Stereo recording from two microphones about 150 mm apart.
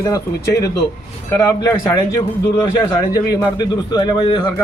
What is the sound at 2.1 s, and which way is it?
A man's voice, 20° left (ahead or behind).